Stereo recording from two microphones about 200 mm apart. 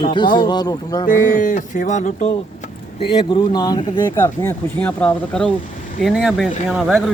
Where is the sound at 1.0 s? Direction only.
40° left (ahead or behind).